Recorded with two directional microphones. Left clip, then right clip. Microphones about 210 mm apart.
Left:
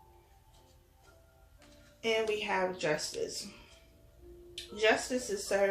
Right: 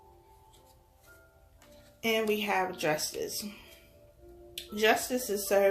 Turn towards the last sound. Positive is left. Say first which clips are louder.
# right 4 dB
turn(degrees=-50)  # may be behind; listen again after turning